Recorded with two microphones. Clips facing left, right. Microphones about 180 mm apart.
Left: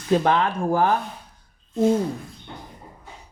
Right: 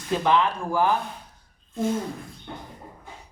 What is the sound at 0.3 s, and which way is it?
Speech, 55° left (ahead or behind).